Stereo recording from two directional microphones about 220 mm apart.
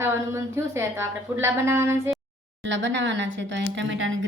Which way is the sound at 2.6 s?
55° right (ahead or behind).